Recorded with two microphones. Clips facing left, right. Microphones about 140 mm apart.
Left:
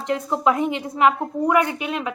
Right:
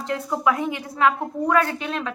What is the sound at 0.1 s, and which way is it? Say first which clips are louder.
A woman's voice: left 2 dB; 25° left (ahead or behind).